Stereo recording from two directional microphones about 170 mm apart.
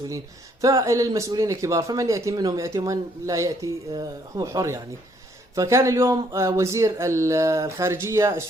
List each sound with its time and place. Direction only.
0.6 s a man's voice: 20° right (ahead or behind)